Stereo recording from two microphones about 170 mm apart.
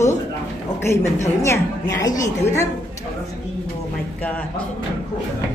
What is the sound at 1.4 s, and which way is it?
A woman's voice, 15° left (ahead or behind).